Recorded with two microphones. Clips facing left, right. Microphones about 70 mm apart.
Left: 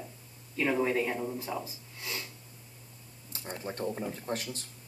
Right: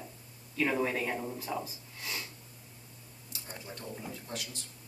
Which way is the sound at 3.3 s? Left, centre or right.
Left.